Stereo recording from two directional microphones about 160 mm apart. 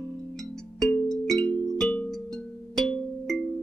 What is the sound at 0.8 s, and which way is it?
Music, 5° left (ahead or behind).